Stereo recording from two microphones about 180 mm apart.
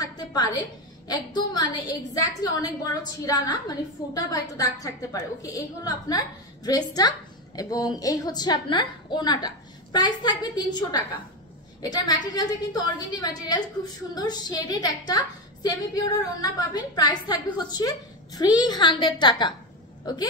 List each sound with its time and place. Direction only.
0.0 s a woman's voice: 20° left (ahead or behind)